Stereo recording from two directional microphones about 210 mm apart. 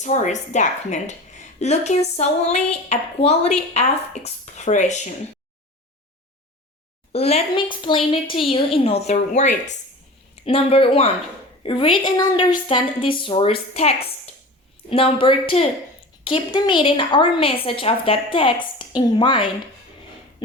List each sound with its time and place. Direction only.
0.0 s a woman's voice: 35° left (ahead or behind)
7.1 s a woman's voice: 30° left (ahead or behind)